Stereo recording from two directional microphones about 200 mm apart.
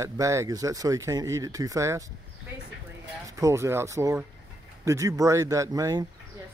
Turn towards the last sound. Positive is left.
turn(degrees=-15)  # may be behind; listen again after turning